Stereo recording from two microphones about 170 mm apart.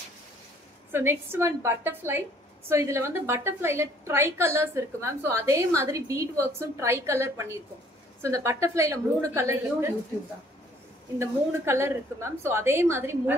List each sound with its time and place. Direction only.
0.9 s a woman's voice: 15° right (ahead or behind)
11.1 s a woman's voice: 15° right (ahead or behind)